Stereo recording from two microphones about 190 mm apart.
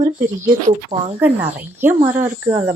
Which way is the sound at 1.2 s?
10° right (ahead or behind).